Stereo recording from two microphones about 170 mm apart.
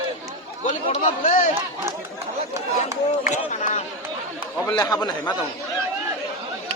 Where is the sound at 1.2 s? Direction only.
50° left (ahead or behind).